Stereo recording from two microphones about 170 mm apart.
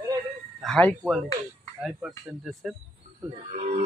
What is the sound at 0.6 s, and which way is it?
Speech, 5° left (ahead or behind).